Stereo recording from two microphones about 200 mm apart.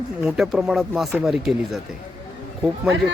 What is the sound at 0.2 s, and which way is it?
A man's voice, 5° right (ahead or behind).